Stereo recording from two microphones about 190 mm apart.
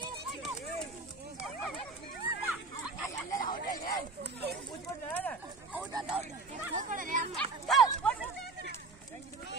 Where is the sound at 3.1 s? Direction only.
20° left (ahead or behind).